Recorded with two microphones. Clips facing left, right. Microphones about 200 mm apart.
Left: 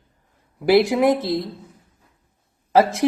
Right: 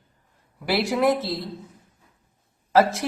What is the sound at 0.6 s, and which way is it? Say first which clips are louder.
Speech: left 7 dB; 15° left (ahead or behind).